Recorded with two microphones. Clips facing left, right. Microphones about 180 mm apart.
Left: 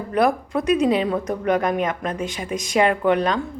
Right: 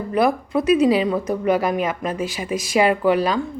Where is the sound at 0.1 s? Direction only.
Centre (ahead or behind).